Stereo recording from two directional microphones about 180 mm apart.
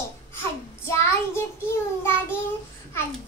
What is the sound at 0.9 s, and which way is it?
Child singing, 15° left (ahead or behind).